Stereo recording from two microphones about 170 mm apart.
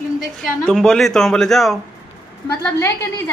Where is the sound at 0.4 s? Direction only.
Centre (ahead or behind).